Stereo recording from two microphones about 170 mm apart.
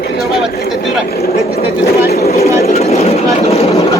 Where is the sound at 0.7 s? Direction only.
Centre (ahead or behind).